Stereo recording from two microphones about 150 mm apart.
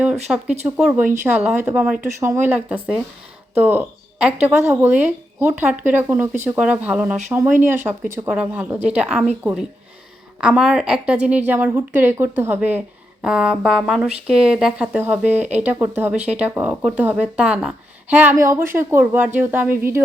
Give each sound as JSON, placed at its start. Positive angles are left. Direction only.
{"t": 0.0, "sound": "a sound", "side_deg": -5}
{"t": 0.4, "sound": "speech", "side_deg": -50}
{"t": 0.8, "sound": "a woman's voice", "side_deg": -5}